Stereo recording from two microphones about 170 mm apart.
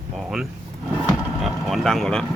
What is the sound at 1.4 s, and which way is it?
Speech, centre (ahead or behind).